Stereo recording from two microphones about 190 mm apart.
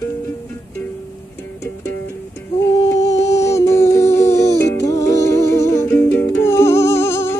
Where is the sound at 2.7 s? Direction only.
15° left (ahead or behind).